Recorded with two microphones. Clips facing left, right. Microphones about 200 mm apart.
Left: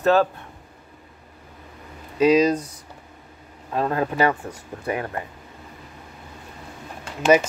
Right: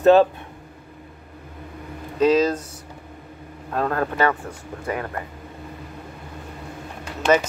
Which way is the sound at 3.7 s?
10° left (ahead or behind).